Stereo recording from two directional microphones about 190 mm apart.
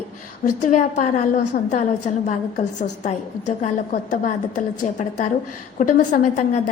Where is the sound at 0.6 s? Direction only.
40° left (ahead or behind).